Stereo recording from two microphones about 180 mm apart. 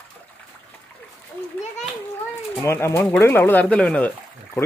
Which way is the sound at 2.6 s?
15° left (ahead or behind).